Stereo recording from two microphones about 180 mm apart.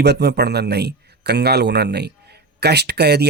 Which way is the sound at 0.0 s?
65° right (ahead or behind).